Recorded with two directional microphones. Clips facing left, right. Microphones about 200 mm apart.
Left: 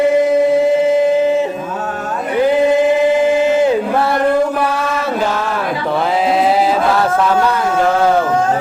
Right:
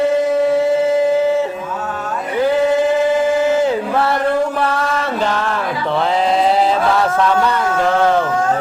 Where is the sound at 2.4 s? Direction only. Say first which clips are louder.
Left 2 dB; 15° left (ahead or behind).